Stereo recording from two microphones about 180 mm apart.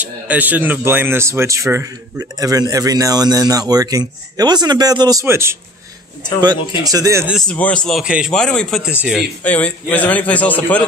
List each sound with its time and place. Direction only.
0.0 s speech: 10° right (ahead or behind)
6.8 s a man's voice: 20° right (ahead or behind)
7.3 s a man's voice: 5° left (ahead or behind)